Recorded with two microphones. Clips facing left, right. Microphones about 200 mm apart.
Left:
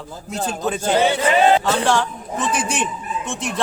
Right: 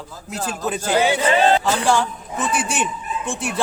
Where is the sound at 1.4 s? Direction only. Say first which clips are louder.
Left 3 dB; 15° left (ahead or behind).